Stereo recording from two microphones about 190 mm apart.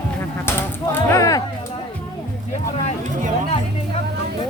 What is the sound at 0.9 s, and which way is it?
Speech, 15° left (ahead or behind).